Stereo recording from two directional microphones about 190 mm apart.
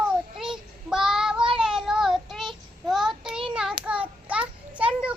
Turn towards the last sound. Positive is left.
turn(degrees=-5)  # may be behind; listen again after turning